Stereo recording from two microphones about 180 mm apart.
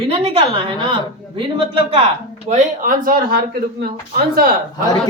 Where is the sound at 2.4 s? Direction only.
45° right (ahead or behind).